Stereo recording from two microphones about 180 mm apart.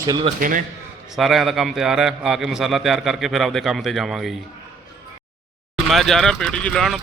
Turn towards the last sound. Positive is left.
turn(degrees=5)  # may be behind; listen again after turning